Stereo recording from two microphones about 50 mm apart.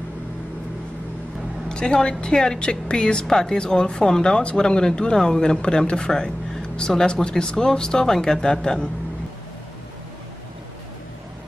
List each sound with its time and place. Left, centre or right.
1.7 s a woman's voice: centre